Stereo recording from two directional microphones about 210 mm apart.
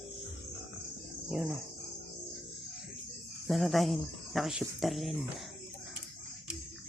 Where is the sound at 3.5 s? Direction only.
Centre (ahead or behind).